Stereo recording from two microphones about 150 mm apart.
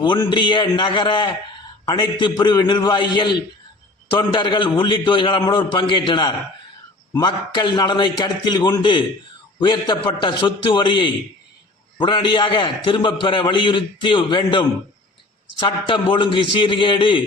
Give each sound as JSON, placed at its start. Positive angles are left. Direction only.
{"t": 0.0, "sound": "a man's voice", "side_deg": 30}